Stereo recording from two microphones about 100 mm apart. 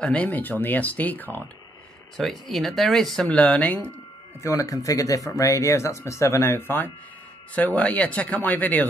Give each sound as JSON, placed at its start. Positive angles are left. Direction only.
{"t": 0.0, "sound": "speech", "side_deg": 15}
{"t": 2.1, "sound": "speech", "side_deg": 0}
{"t": 3.3, "sound": "speech", "side_deg": 15}
{"t": 4.4, "sound": "speech", "side_deg": 30}